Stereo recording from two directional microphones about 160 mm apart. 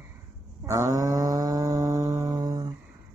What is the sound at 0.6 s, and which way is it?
Cattle, 20° right (ahead or behind).